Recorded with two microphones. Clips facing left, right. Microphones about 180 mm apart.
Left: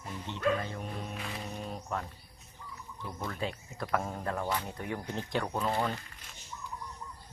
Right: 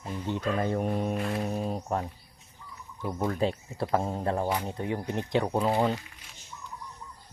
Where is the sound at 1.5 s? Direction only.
40° right (ahead or behind).